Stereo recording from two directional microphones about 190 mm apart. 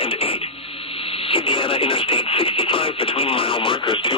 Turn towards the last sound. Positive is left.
turn(degrees=25)  # may be behind; listen again after turning